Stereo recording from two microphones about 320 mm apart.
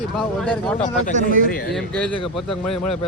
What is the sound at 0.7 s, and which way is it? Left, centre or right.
Speech, left.